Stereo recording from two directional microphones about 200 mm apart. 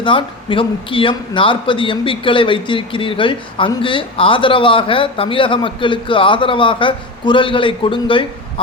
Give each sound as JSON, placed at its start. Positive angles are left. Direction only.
{"t": 0.0, "sound": "a man's voice", "side_deg": 25}